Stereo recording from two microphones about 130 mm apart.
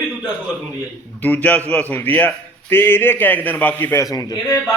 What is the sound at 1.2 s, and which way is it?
A man's voice, 10° left (ahead or behind).